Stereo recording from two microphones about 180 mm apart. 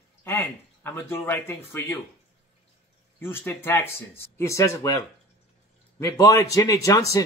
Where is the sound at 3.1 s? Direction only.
10° left (ahead or behind).